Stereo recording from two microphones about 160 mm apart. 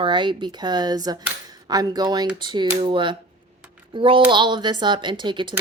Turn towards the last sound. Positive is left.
turn(degrees=-30)  # may be behind; listen again after turning